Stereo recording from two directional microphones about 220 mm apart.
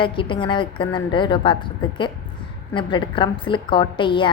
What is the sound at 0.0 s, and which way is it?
A woman's voice, 20° left (ahead or behind).